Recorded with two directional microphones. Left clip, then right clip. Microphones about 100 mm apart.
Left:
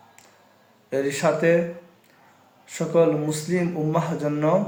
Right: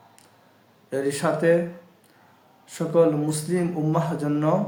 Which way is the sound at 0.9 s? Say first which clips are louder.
Left 2 dB; 20° right (ahead or behind).